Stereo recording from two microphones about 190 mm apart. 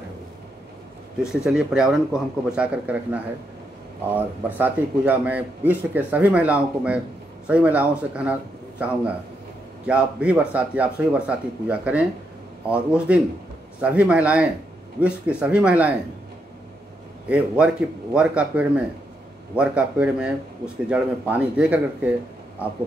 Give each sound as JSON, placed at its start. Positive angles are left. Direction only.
{"t": 1.2, "sound": "speech", "side_deg": -5}
{"t": 17.3, "sound": "speech", "side_deg": -5}